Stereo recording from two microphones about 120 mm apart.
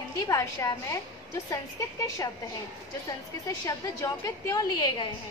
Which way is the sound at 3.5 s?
30° left (ahead or behind).